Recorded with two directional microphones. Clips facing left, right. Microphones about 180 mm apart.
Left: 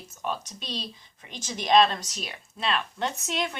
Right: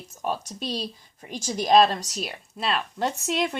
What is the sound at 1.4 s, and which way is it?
Speech, 35° right (ahead or behind).